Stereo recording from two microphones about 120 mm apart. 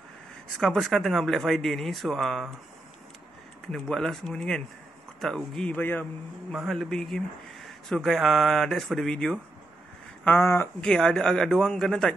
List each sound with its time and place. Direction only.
0.5 s speech: 5° left (ahead or behind)
3.7 s speech: 5° left (ahead or behind)
5.8 s a man's voice: 15° left (ahead or behind)
6.7 s speech: 5° left (ahead or behind)
10.2 s speech: 20° left (ahead or behind)
10.8 s speech: 5° left (ahead or behind)